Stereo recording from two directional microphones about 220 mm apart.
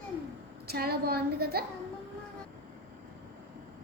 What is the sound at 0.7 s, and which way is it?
Speech, 45° right (ahead or behind).